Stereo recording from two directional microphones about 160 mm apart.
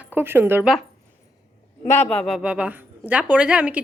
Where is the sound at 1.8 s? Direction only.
15° left (ahead or behind); by 3.8 s 5° right (ahead or behind).